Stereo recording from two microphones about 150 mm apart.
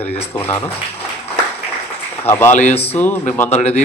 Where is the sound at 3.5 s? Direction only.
50° left (ahead or behind).